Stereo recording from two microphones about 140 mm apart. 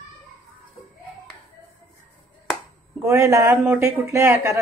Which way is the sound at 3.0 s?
20° right (ahead or behind).